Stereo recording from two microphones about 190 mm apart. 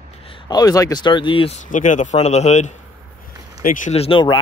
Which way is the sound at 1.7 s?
40° left (ahead or behind).